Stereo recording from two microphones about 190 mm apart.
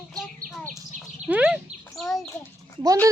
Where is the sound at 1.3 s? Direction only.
5° right (ahead or behind).